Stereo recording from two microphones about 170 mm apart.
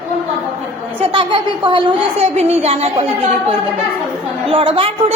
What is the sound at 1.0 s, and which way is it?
A woman's voice, 30° right (ahead or behind).